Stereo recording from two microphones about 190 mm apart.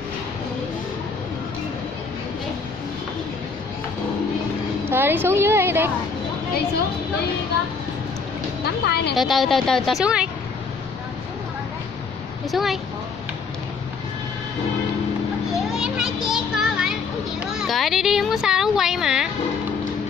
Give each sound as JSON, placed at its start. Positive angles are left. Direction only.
{"t": 4.8, "sound": "a woman's voice", "side_deg": -10}
{"t": 8.8, "sound": "speech", "side_deg": 60}
{"t": 9.1, "sound": "speech", "side_deg": 0}
{"t": 12.4, "sound": "speech", "side_deg": 0}
{"t": 15.5, "sound": "children playing", "side_deg": -5}
{"t": 17.5, "sound": "speech", "side_deg": 0}